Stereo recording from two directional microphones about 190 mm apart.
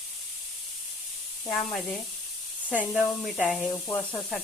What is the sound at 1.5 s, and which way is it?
Speech, centre (ahead or behind).